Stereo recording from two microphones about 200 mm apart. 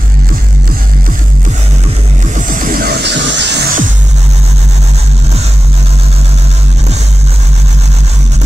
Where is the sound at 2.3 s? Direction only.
40° right (ahead or behind); by 3.6 s 60° right (ahead or behind).